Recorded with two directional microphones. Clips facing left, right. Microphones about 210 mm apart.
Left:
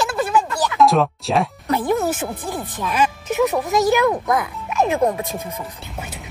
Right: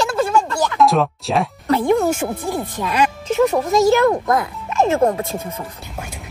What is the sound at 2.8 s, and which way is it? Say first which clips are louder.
Speech: right 2 dB; 15° right (ahead or behind).